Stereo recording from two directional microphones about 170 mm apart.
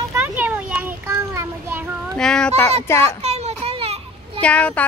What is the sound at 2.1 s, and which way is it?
Speech, 5° left (ahead or behind).